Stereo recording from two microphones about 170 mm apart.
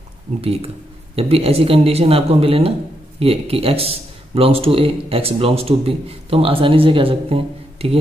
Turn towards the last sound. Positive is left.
turn(degrees=-35)  # may be behind; listen again after turning